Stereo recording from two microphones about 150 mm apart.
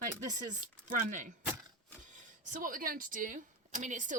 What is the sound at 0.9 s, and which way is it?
A woman's voice, 60° right (ahead or behind).